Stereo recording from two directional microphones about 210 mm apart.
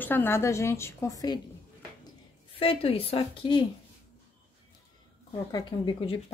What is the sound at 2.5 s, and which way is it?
A woman's voice, 25° left (ahead or behind).